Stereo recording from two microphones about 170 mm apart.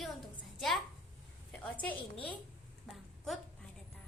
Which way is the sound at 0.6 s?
Centre (ahead or behind).